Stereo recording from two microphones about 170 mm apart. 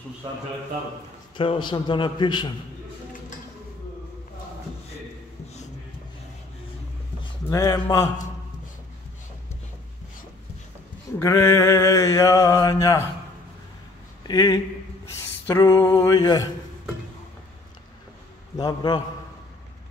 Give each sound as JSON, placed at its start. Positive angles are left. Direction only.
{"t": 1.3, "sound": "mantra", "side_deg": 30}
{"t": 7.4, "sound": "mantra", "side_deg": 20}
{"t": 11.1, "sound": "mantra", "side_deg": 15}
{"t": 14.2, "sound": "mantra", "side_deg": 25}
{"t": 18.6, "sound": "mantra", "side_deg": 25}